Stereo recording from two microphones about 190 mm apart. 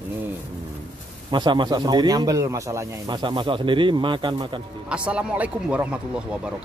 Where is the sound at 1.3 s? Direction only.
25° right (ahead or behind).